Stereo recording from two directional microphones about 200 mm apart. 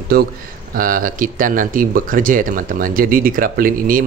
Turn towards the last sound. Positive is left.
turn(degrees=-45)  # may be behind; listen again after turning